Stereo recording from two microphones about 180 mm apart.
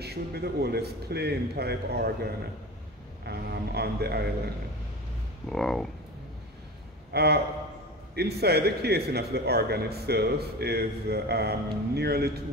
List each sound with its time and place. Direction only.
0.0 s a man's voice: 65° right (ahead or behind)
5.5 s speech: 5° left (ahead or behind)
7.1 s a man's voice: 65° right (ahead or behind)